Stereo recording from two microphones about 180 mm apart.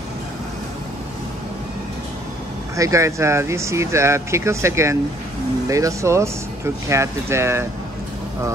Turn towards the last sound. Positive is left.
turn(degrees=-15)  # may be behind; listen again after turning